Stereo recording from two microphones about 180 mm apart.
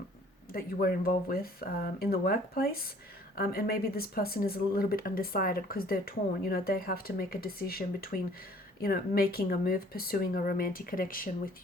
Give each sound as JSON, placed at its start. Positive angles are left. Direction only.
{"t": 0.5, "sound": "speech", "side_deg": 55}